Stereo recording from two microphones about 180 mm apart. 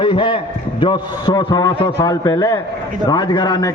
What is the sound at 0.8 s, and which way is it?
A man's voice, 25° left (ahead or behind).